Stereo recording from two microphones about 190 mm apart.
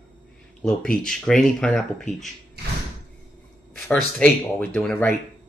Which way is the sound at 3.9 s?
10° left (ahead or behind).